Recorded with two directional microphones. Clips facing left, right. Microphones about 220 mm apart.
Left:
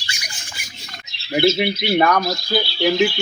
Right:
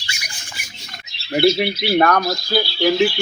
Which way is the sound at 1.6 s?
Centre (ahead or behind).